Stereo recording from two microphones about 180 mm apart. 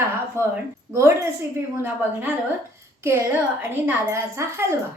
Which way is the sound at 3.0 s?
15° right (ahead or behind).